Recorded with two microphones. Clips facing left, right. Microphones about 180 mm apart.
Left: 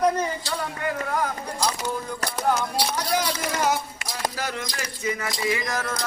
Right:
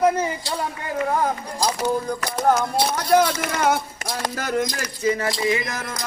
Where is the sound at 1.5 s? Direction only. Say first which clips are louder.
Right 5 dB; 40° right (ahead or behind).